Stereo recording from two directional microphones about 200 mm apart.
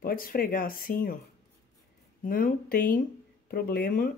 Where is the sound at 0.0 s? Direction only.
45° left (ahead or behind).